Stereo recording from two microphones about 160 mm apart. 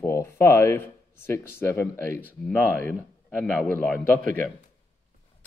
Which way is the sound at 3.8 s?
10° left (ahead or behind).